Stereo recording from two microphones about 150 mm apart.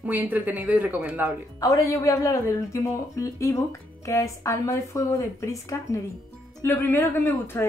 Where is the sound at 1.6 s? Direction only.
20° left (ahead or behind).